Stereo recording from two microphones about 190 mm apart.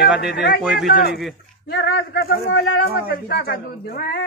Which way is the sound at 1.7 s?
60° left (ahead or behind).